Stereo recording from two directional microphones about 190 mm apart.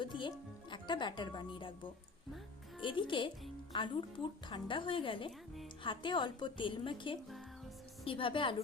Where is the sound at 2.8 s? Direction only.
25° left (ahead or behind).